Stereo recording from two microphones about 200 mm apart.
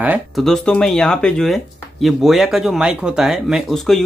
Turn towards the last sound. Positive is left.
turn(degrees=0)  # may be behind; listen again after turning